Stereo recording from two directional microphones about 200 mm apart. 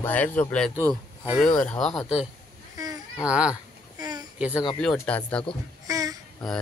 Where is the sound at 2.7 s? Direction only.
20° right (ahead or behind).